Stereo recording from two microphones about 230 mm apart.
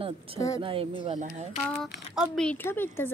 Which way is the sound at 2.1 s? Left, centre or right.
Centre.